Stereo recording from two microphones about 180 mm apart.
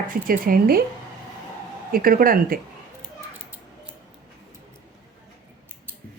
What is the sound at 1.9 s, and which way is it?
Speech, 55° right (ahead or behind).